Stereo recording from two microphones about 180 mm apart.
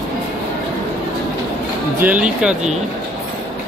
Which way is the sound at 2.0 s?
10° right (ahead or behind).